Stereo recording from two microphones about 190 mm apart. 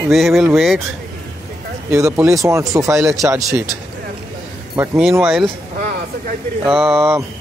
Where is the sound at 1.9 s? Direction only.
15° right (ahead or behind).